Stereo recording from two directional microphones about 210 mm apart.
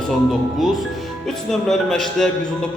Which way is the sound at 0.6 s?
Centre (ahead or behind).